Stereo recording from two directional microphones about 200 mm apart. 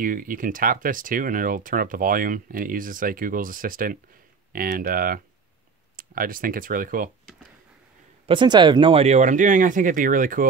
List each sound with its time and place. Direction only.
0.0 s speech: 45° right (ahead or behind)
8.3 s speech: 25° right (ahead or behind); by 10.4 s 45° right (ahead or behind)